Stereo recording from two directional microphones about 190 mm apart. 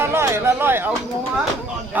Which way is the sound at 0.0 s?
15° right (ahead or behind).